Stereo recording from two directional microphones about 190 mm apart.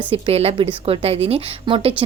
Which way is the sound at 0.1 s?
30° right (ahead or behind).